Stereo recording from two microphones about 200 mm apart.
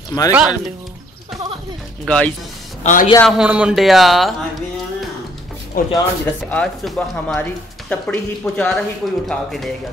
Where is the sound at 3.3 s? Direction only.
5° right (ahead or behind).